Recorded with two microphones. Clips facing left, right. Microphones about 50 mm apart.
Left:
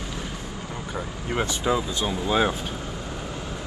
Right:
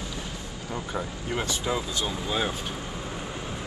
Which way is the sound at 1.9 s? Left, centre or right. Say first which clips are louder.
Left 5 dB; centre.